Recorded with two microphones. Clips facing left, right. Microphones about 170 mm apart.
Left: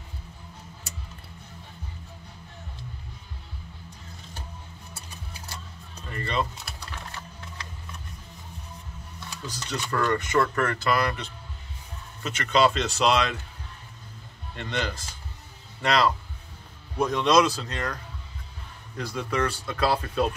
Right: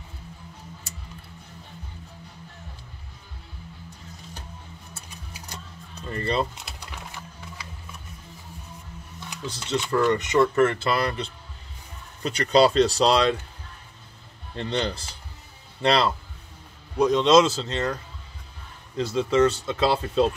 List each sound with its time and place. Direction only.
6.1 s speech: 35° right (ahead or behind)
6.5 s a sound: 15° right (ahead or behind)
9.7 s speech: 20° right (ahead or behind)
14.5 s speech: 30° right (ahead or behind)
18.9 s speech: 20° right (ahead or behind)